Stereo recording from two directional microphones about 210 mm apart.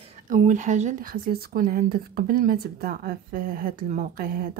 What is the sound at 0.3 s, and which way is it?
Speech, 35° right (ahead or behind).